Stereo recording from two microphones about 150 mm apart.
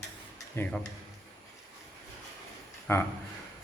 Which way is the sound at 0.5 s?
10° left (ahead or behind).